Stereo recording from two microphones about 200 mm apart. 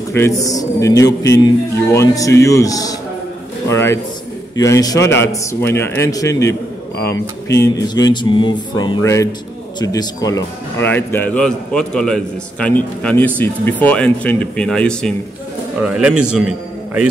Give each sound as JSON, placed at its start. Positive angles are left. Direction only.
{"t": 0.1, "sound": "speech", "side_deg": 15}